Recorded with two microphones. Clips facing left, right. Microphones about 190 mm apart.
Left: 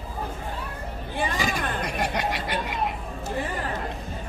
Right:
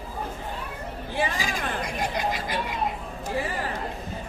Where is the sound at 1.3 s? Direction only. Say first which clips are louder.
Left 2 dB; 70° left (ahead or behind).